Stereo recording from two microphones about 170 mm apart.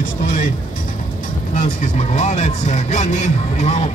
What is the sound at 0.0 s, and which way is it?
Music, 50° left (ahead or behind).